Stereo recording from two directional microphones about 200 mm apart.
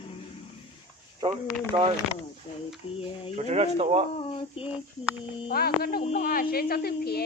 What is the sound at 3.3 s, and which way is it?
Speech, 35° right (ahead or behind).